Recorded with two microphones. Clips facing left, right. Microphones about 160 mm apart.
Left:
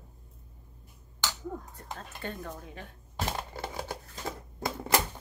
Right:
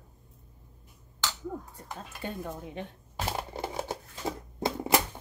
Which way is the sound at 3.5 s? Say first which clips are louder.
Right 3 dB; 20° right (ahead or behind).